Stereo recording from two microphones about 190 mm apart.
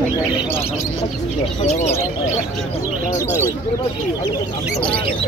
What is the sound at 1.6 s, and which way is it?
Speech, 35° left (ahead or behind).